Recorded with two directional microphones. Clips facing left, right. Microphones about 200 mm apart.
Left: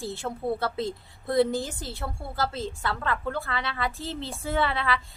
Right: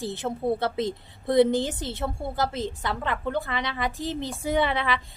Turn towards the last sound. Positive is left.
turn(degrees=-20)  # may be behind; listen again after turning